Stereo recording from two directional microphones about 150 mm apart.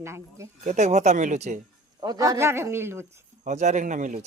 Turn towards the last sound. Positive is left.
turn(degrees=-55)  # may be behind; listen again after turning